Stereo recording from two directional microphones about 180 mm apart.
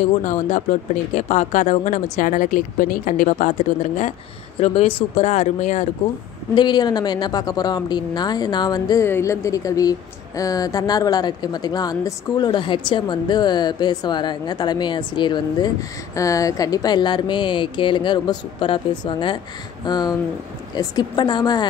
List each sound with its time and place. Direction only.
1.1 s speech: 40° left (ahead or behind)
6.5 s speech: 25° left (ahead or behind)